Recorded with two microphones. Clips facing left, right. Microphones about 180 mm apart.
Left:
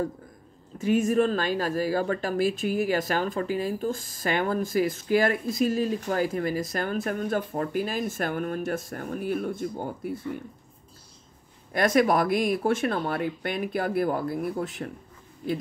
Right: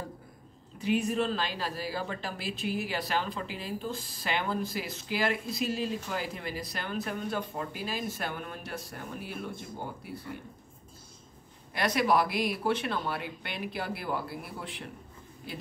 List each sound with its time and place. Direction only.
0.7 s speech: 45° left (ahead or behind)
11.7 s speech: 45° left (ahead or behind)